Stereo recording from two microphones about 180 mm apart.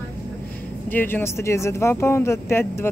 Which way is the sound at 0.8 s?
10° left (ahead or behind).